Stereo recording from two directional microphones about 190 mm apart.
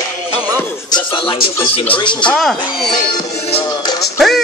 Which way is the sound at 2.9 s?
20° left (ahead or behind).